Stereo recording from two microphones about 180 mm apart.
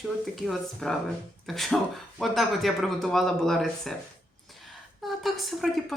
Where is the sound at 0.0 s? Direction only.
Centre (ahead or behind).